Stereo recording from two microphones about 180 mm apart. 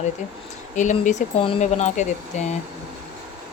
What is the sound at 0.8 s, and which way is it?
Speech, 40° left (ahead or behind).